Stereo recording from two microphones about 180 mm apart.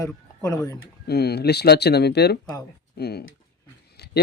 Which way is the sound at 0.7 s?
60° left (ahead or behind).